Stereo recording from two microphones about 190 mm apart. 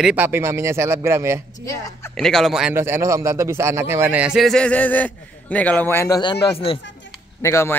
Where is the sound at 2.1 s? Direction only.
Centre (ahead or behind); by 6.7 s 30° left (ahead or behind).